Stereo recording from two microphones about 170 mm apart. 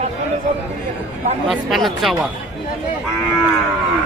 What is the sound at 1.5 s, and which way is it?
Speech, centre (ahead or behind).